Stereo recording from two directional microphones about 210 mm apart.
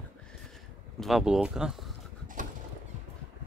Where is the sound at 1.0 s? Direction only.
Centre (ahead or behind).